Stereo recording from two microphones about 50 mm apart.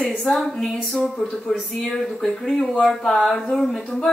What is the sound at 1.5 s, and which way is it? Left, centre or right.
Speech, centre.